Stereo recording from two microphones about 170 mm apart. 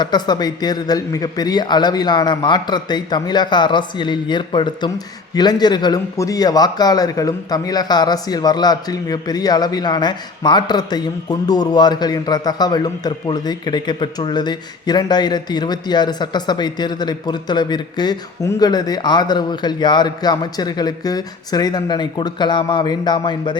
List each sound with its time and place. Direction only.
0.0 s a man's voice: 25° left (ahead or behind)